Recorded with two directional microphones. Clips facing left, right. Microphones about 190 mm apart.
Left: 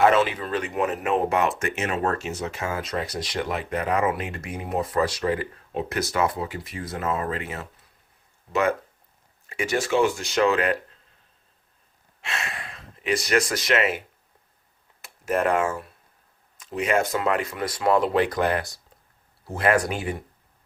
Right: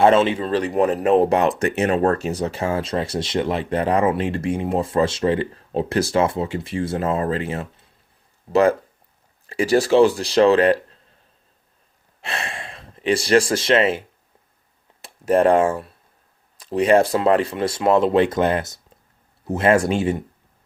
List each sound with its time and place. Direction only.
0.0 s speech: 25° right (ahead or behind)
9.5 s speech: 35° right (ahead or behind)
12.2 s speech: 30° right (ahead or behind)
15.0 s speech: 30° right (ahead or behind)